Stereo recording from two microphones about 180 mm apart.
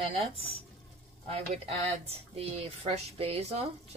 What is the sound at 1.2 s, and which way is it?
Speech, 35° right (ahead or behind).